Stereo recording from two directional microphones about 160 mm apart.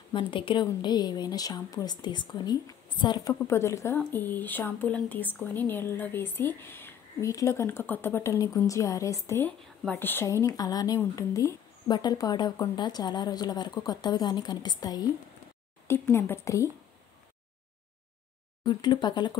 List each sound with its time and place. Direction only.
0.1 s speech: 30° left (ahead or behind)
18.7 s speech: 25° left (ahead or behind)